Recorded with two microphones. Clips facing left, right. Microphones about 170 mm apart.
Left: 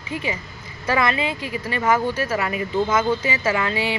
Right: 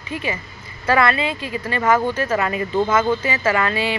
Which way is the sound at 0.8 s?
15° left (ahead or behind).